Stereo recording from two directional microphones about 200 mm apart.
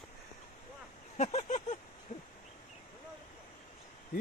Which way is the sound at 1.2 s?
35° left (ahead or behind).